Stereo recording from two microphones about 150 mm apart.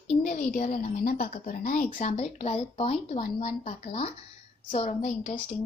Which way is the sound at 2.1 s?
40° left (ahead or behind).